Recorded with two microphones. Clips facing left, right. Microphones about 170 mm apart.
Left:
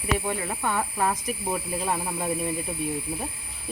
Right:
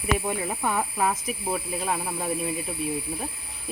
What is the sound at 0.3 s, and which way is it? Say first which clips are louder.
Speech: right 1 dB; 10° right (ahead or behind).